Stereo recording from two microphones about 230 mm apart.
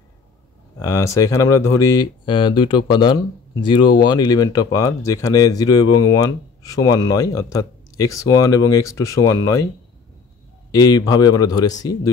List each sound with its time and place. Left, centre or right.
0.7 s speech: centre
10.7 s speech: centre